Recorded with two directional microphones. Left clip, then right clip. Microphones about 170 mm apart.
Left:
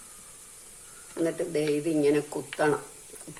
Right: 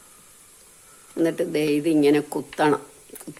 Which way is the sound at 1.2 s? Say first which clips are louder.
Right 5 dB; 55° right (ahead or behind).